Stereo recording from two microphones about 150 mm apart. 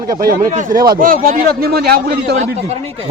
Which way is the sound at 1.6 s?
90° right.